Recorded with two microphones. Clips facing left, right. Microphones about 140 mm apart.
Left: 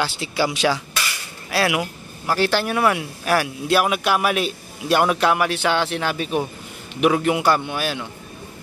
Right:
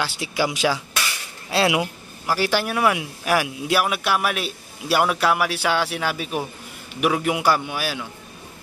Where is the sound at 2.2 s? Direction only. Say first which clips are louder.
Left 2 dB; 10° right (ahead or behind).